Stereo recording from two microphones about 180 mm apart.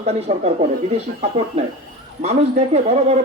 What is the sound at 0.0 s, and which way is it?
Speech, 35° right (ahead or behind).